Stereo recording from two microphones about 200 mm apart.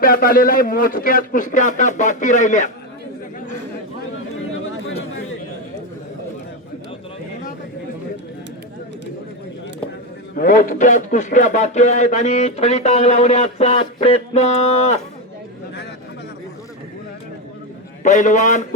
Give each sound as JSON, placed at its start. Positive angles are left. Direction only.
{"t": 0.0, "sound": "a man's voice", "side_deg": 45}
{"t": 10.3, "sound": "a man's voice", "side_deg": 45}
{"t": 18.0, "sound": "a man's voice", "side_deg": 40}